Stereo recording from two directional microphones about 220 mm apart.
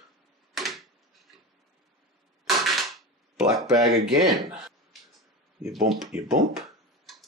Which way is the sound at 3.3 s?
Centre (ahead or behind).